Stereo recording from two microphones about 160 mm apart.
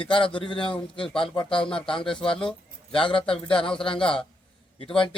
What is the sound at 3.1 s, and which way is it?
Speech, 35° left (ahead or behind).